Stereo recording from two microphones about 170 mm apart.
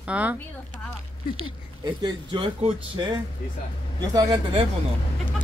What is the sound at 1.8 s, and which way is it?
Speech, 25° right (ahead or behind).